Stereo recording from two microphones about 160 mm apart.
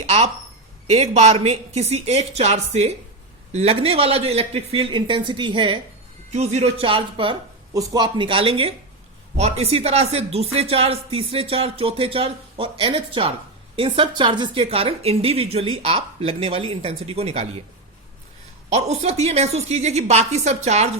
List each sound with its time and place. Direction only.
0.0 s a woman's voice: 40° right (ahead or behind)
6.3 s speech: 40° right (ahead or behind)
18.7 s a woman's voice: 40° right (ahead or behind)